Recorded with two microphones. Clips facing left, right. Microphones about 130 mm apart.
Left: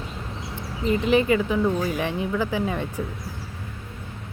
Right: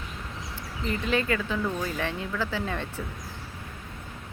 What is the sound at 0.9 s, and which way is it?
A woman's voice, 20° left (ahead or behind).